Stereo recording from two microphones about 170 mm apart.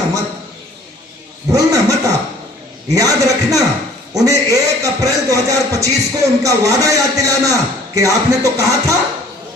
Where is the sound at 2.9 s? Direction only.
20° right (ahead or behind).